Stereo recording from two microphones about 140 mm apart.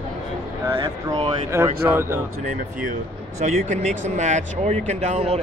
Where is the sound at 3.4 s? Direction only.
60° right (ahead or behind).